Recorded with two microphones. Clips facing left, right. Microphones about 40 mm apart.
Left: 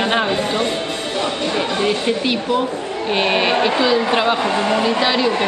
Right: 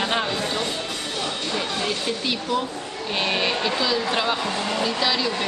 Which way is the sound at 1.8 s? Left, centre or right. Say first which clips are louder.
Left 7 dB; left.